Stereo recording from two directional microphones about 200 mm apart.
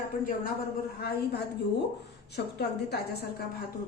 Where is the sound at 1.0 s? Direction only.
50° left (ahead or behind).